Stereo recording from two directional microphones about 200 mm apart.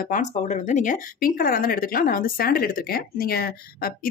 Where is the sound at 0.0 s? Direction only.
40° left (ahead or behind).